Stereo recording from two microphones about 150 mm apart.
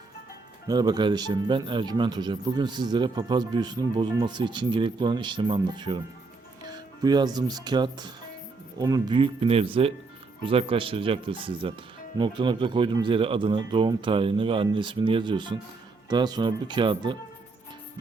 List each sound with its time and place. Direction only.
0.7 s speech: 30° right (ahead or behind)